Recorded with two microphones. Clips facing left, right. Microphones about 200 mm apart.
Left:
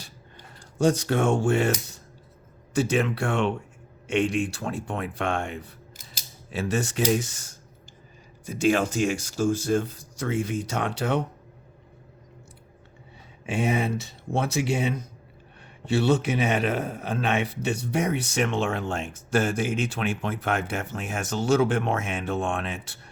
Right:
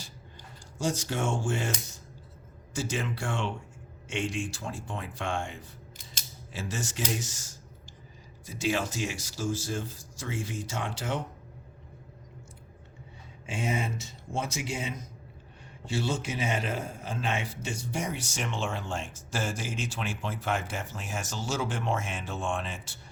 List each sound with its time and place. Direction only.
0.0 s a sound: 60° left (ahead or behind)
2.7 s a man's voice: 60° left (ahead or behind)
8.5 s a man's voice: 55° left (ahead or behind)
13.4 s a man's voice: 65° left (ahead or behind)